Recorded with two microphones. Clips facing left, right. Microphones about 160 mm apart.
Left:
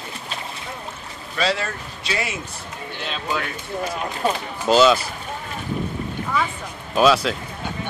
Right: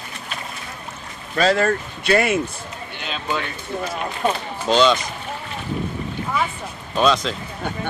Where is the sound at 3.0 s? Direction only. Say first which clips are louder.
Right 1 dB; centre (ahead or behind).